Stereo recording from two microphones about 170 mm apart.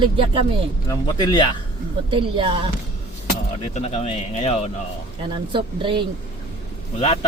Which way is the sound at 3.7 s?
40° left (ahead or behind).